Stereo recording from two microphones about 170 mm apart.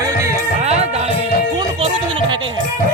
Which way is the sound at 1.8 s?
30° right (ahead or behind).